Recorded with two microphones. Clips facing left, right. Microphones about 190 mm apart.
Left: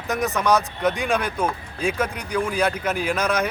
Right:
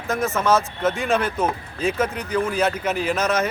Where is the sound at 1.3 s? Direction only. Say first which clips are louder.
Right 1 dB; 5° right (ahead or behind).